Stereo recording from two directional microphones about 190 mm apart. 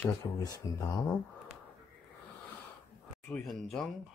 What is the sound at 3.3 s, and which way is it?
Speech, centre (ahead or behind).